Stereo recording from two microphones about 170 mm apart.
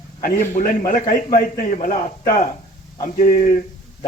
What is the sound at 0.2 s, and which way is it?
Speech, 55° left (ahead or behind).